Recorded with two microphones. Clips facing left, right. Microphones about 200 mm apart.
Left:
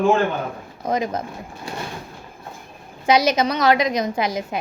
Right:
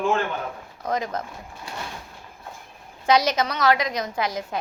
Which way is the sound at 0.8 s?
10° left (ahead or behind).